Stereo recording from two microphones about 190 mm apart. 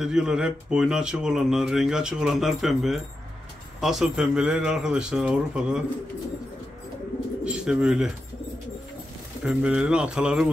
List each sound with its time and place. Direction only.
0.0 s speech: 5° right (ahead or behind)
7.4 s speech: 5° right (ahead or behind)
9.4 s speech: 5° right (ahead or behind)